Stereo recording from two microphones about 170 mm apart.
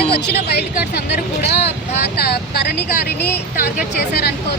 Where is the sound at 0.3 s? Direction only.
75° left (ahead or behind).